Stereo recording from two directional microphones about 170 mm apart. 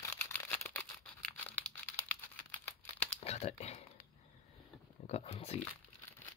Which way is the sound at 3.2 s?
40° left (ahead or behind).